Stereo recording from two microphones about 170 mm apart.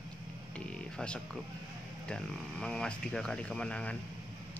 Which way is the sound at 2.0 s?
5° left (ahead or behind).